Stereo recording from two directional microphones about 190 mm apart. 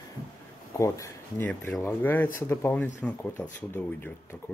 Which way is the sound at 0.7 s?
15° left (ahead or behind).